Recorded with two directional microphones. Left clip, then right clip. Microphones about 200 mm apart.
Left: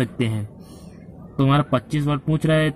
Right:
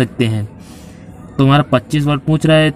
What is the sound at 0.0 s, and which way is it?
Speech, 10° right (ahead or behind).